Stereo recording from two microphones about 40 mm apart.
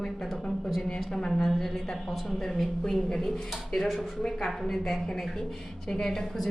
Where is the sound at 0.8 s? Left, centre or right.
Centre.